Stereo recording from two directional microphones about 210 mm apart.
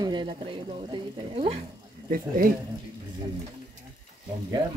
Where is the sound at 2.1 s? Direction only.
40° right (ahead or behind).